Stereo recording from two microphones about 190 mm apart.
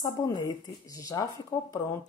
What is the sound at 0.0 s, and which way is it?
A woman's voice, 20° left (ahead or behind).